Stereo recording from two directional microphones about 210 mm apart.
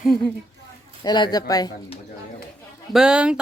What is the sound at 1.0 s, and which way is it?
Speech, 20° left (ahead or behind).